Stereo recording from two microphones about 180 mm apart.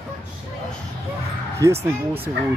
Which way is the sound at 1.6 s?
15° right (ahead or behind).